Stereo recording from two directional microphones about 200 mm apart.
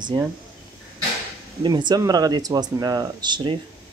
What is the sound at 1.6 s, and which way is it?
Speech, 20° right (ahead or behind).